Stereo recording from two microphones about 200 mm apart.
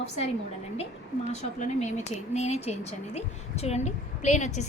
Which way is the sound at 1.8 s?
35° left (ahead or behind).